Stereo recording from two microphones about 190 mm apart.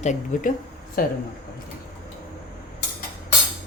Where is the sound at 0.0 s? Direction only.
40° left (ahead or behind).